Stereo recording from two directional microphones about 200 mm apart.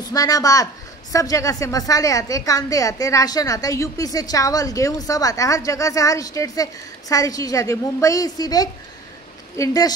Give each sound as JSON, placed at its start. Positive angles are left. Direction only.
{"t": 0.0, "sound": "a woman's voice", "side_deg": 20}